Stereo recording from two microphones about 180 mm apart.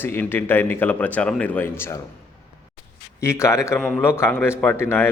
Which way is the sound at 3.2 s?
15° left (ahead or behind).